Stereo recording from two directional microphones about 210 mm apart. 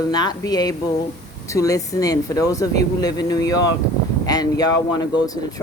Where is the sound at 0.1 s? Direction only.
20° left (ahead or behind).